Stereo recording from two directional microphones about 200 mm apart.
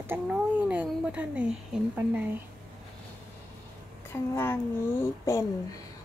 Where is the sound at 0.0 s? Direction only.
10° right (ahead or behind).